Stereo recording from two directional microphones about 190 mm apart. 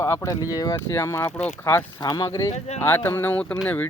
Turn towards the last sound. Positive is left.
turn(degrees=10)  # may be behind; listen again after turning